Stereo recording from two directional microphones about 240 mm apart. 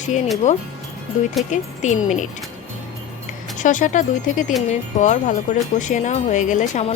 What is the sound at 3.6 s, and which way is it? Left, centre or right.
Speech, left.